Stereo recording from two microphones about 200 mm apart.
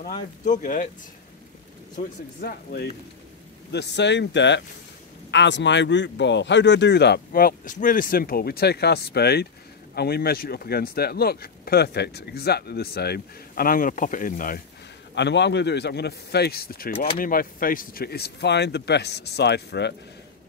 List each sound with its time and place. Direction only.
0.0 s speech: 40° left (ahead or behind)
2.4 s speech: 50° left (ahead or behind)
15.1 s speech: 60° left (ahead or behind)